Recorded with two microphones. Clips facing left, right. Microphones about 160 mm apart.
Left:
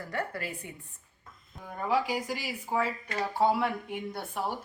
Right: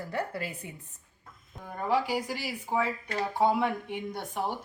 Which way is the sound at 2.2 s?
10° left (ahead or behind).